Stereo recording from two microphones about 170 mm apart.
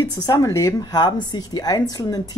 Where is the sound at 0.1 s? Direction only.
15° left (ahead or behind).